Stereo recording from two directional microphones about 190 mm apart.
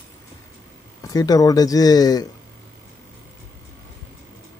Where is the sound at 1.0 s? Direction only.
20° left (ahead or behind).